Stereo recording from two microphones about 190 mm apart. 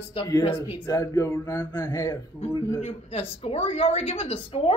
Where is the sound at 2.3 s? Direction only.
30° left (ahead or behind).